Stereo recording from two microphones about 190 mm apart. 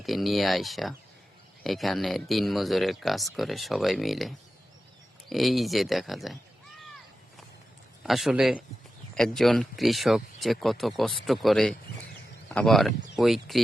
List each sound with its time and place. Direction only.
0.0 s speech: centre (ahead or behind)
8.0 s speech: centre (ahead or behind)